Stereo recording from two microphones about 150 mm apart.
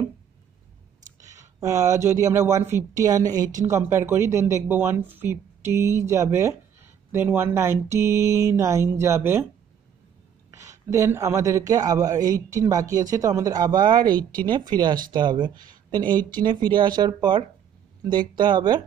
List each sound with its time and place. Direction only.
1.2 s speech: 20° right (ahead or behind)
10.5 s a man's voice: 20° right (ahead or behind)